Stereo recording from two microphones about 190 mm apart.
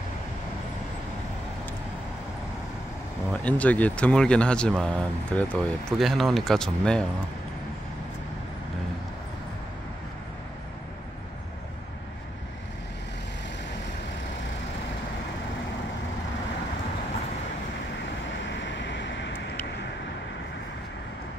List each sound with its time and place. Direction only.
3.4 s speech: 5° left (ahead or behind)
18.4 s vehicle: 70° left (ahead or behind)